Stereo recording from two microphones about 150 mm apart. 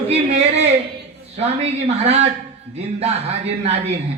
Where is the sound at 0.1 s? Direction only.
45° right (ahead or behind).